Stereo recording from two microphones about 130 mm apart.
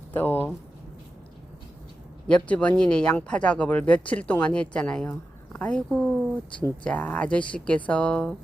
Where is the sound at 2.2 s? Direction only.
10° left (ahead or behind).